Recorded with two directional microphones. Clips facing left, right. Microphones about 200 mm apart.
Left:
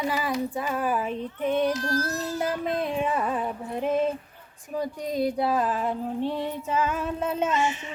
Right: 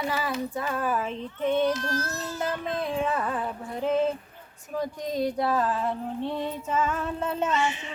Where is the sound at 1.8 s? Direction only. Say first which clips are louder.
Left 3 dB; 35° left (ahead or behind).